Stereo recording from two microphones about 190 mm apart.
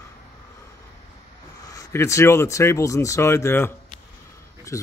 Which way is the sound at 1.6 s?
15° left (ahead or behind).